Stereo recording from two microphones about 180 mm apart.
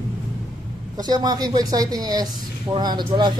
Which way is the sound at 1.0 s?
20° right (ahead or behind).